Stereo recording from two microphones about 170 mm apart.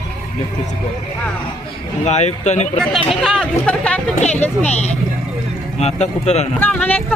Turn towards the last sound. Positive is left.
turn(degrees=10)  # may be behind; listen again after turning